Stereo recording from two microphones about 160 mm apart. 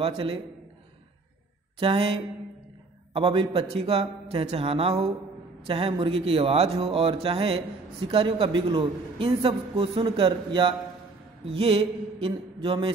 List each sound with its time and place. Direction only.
0.0 s a man's voice: 35° right (ahead or behind)
1.8 s a man's voice: 35° right (ahead or behind)